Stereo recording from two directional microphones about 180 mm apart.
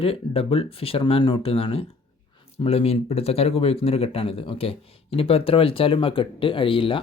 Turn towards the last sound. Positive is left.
turn(degrees=30)  # may be behind; listen again after turning